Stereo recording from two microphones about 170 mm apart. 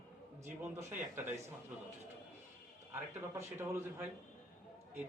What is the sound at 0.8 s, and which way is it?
Speech, 15° right (ahead or behind).